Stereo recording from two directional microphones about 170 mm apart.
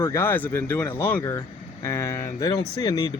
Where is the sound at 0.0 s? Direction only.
15° left (ahead or behind).